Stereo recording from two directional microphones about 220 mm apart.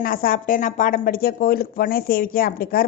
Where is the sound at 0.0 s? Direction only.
40° left (ahead or behind).